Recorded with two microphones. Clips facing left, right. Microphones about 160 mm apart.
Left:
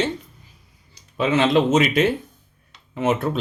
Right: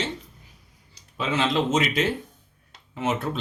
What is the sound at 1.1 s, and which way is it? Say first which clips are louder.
Speech: left 6 dB; 60° left (ahead or behind).